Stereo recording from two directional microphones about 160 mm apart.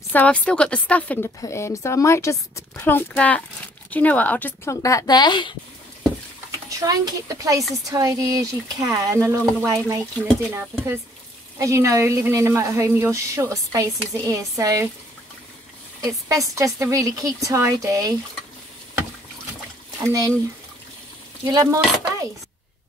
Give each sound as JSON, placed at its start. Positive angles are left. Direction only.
{"t": 0.1, "sound": "speech", "side_deg": 10}
{"t": 6.8, "sound": "a woman's voice", "side_deg": -20}
{"t": 11.5, "sound": "a woman's voice", "side_deg": -20}
{"t": 16.0, "sound": "a woman's voice", "side_deg": -20}
{"t": 20.1, "sound": "a woman's voice", "side_deg": -20}
{"t": 21.5, "sound": "a woman's voice", "side_deg": -20}